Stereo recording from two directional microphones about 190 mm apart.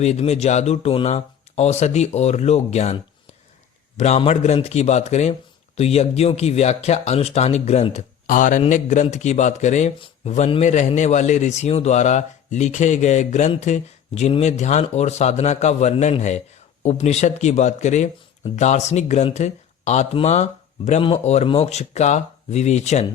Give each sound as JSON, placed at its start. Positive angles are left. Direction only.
{"t": 0.0, "sound": "speech", "side_deg": 35}